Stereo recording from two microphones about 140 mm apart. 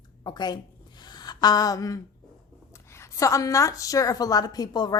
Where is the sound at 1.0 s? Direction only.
30° left (ahead or behind).